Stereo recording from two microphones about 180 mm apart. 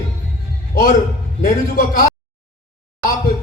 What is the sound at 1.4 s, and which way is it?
Speech, 55° left (ahead or behind).